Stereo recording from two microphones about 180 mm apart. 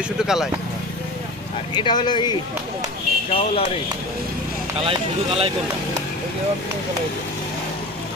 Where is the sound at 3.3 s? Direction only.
30° left (ahead or behind).